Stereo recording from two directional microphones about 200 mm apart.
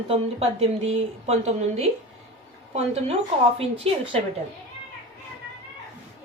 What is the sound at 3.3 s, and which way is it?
Speech, 30° right (ahead or behind).